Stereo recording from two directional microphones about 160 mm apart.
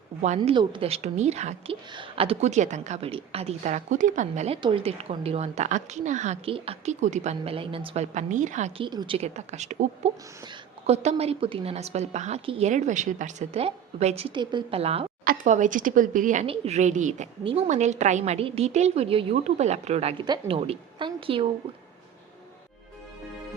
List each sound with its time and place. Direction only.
0.3 s a woman's voice: 30° right (ahead or behind); by 1.7 s 45° right (ahead or behind)
1.9 s a woman's voice: 35° right (ahead or behind); by 8.7 s 50° right (ahead or behind)
8.8 s a woman's voice: 30° right (ahead or behind)
9.1 s a woman's voice: 45° right (ahead or behind)
15.2 s a woman's voice: 55° right (ahead or behind)
17.4 s a woman's voice: 40° right (ahead or behind)